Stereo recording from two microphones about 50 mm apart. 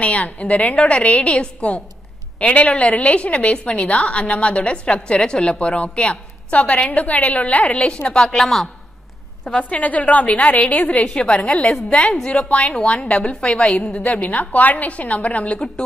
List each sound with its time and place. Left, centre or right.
0.0 s a woman's voice: left
8.4 s a woman's voice: centre
9.5 s a woman's voice: left
11.1 s a woman's voice: centre
11.7 s a woman's voice: centre
12.3 s a woman's voice: left
14.0 s a woman's voice: left